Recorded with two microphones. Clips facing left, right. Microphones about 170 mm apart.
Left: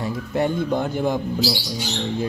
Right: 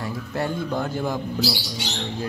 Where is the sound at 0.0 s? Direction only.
20° left (ahead or behind).